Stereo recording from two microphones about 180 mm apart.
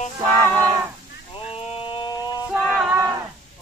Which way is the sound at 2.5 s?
5° left (ahead or behind).